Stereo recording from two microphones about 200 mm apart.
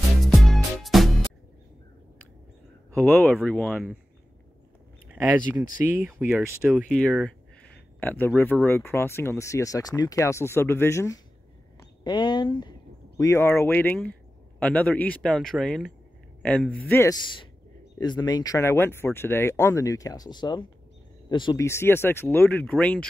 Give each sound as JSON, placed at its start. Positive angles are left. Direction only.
{"t": 0.2, "sound": "music", "side_deg": 0}
{"t": 3.0, "sound": "speech", "side_deg": 10}
{"t": 5.1, "sound": "a sound", "side_deg": -10}
{"t": 5.5, "sound": "speech", "side_deg": -10}
{"t": 6.7, "sound": "speech", "side_deg": 0}